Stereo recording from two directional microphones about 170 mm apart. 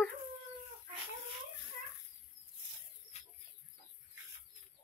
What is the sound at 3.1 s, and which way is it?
Chicken, 40° left (ahead or behind).